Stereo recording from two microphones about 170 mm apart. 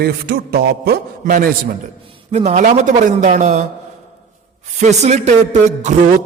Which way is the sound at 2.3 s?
40° right (ahead or behind).